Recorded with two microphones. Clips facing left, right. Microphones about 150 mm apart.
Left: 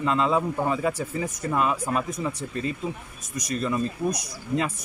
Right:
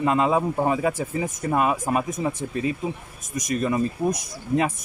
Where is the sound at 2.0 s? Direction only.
45° right (ahead or behind).